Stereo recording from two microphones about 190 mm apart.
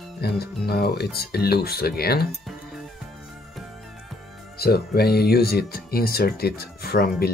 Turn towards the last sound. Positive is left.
turn(degrees=55)  # may be behind; listen again after turning